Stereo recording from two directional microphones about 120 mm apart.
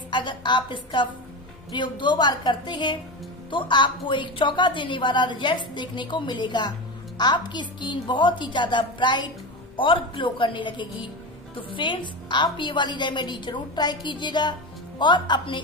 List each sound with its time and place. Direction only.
0.1 s a woman's voice: 40° left (ahead or behind)